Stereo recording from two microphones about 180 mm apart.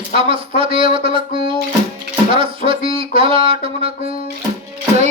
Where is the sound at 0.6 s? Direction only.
30° right (ahead or behind).